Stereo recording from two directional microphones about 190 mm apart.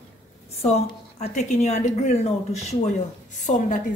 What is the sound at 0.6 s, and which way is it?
A woman's voice, 35° left (ahead or behind).